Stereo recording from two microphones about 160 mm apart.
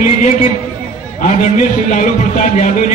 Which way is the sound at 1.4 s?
50° left (ahead or behind).